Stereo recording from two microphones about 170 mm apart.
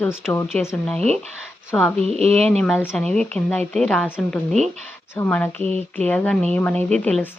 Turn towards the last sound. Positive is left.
turn(degrees=10)  # may be behind; listen again after turning